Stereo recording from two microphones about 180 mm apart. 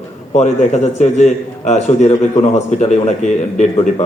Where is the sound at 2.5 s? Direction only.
40° left (ahead or behind).